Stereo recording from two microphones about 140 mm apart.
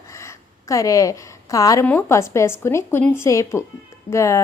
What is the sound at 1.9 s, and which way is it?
A woman's voice, 15° left (ahead or behind).